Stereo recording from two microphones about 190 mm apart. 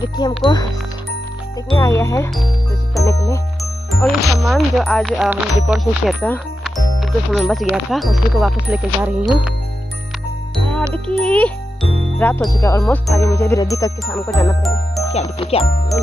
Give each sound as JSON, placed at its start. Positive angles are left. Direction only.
{"t": 0.2, "sound": "speech", "side_deg": 20}
{"t": 1.8, "sound": "speech", "side_deg": 15}
{"t": 3.9, "sound": "speech", "side_deg": 0}
{"t": 10.5, "sound": "music", "side_deg": 5}
{"t": 11.1, "sound": "a child's voice", "side_deg": 5}
{"t": 15.1, "sound": "speech", "side_deg": 30}